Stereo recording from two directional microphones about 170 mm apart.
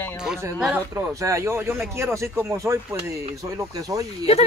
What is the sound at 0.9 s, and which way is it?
Speech, 15° right (ahead or behind).